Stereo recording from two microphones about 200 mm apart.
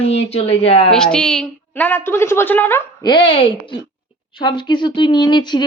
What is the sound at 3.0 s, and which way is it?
Speech, 25° left (ahead or behind).